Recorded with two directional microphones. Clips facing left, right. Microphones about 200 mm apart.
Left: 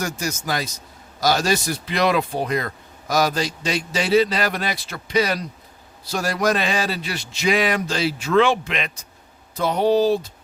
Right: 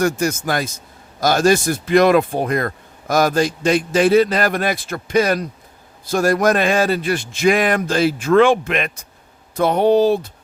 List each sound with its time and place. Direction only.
0.0 s speech: 55° right (ahead or behind)